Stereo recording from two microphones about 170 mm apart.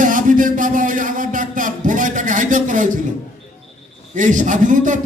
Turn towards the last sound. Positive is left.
turn(degrees=-50)  # may be behind; listen again after turning